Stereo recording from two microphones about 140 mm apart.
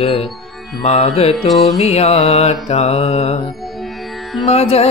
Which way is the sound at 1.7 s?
50° left (ahead or behind).